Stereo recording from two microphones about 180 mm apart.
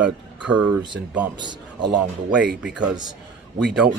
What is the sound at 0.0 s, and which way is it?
Speech, 5° right (ahead or behind).